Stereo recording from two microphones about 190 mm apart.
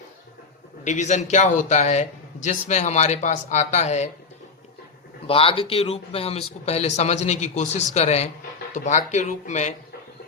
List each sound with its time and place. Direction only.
0.9 s a man's voice: 40° left (ahead or behind)
5.2 s a man's voice: 30° left (ahead or behind)